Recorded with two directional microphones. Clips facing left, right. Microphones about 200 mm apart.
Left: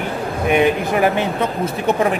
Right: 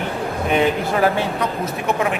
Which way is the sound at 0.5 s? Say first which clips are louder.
Left 3 dB; 15° left (ahead or behind).